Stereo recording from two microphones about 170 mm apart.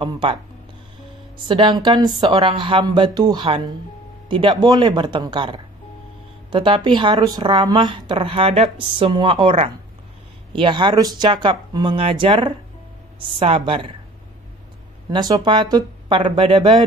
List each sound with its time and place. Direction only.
0.0 s speech: 30° right (ahead or behind)
1.5 s a woman's voice: 25° right (ahead or behind)
15.0 s speech: 25° right (ahead or behind)